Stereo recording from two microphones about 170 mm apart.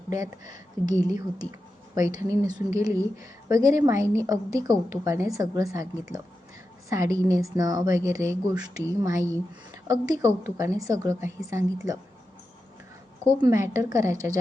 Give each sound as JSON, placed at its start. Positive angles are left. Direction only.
{"t": 0.1, "sound": "a woman's voice", "side_deg": -20}
{"t": 13.4, "sound": "a woman's voice", "side_deg": -20}